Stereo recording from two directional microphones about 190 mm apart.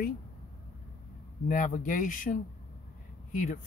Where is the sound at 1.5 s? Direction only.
45° left (ahead or behind).